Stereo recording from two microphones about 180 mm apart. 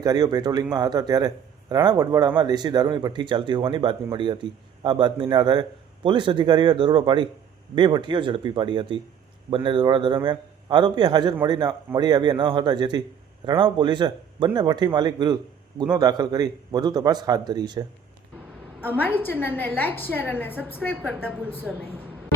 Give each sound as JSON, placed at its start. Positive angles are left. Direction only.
{"t": 0.0, "sound": "speech", "side_deg": -20}
{"t": 18.9, "sound": "a woman's voice", "side_deg": 10}